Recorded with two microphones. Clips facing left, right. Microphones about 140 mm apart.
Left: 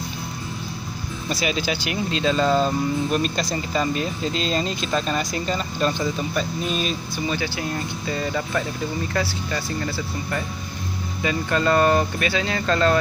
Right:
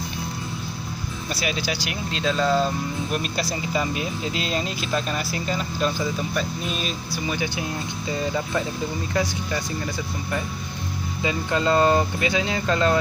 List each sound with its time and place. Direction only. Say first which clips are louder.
1.3 s speech: left 3 dB; centre (ahead or behind)
7.2 s speech: left 1 dB; 15° right (ahead or behind)